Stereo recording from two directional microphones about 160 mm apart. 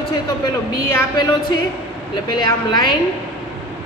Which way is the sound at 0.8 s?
15° left (ahead or behind).